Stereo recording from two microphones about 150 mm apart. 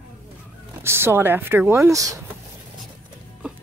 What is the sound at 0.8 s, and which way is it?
Speech, 15° right (ahead or behind).